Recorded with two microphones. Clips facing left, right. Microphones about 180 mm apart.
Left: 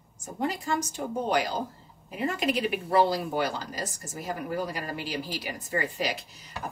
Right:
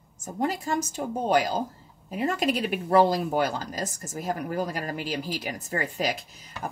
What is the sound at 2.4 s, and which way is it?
A woman's voice, 45° right (ahead or behind).